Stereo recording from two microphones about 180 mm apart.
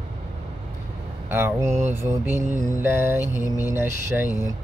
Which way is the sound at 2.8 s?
10° right (ahead or behind).